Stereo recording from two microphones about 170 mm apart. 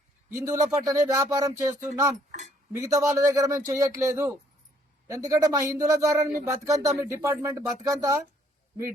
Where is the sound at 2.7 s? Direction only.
20° right (ahead or behind).